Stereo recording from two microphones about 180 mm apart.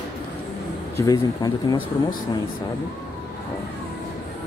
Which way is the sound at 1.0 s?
20° left (ahead or behind).